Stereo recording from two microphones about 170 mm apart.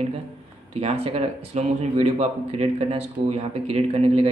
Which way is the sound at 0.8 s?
35° right (ahead or behind).